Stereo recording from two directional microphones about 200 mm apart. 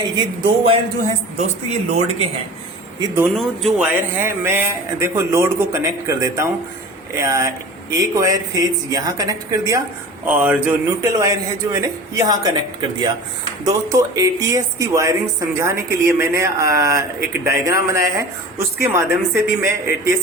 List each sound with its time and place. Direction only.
0.0 s speech: 25° right (ahead or behind)
3.2 s a woman's voice: centre (ahead or behind); by 12.5 s 20° right (ahead or behind)
13.7 s a woman's voice: 15° right (ahead or behind)